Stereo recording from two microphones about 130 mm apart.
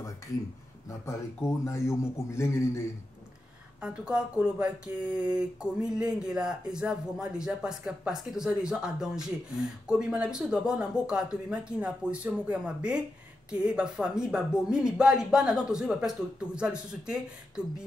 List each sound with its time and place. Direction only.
0.8 s a man's voice: 25° left (ahead or behind)
3.8 s speech: 10° right (ahead or behind)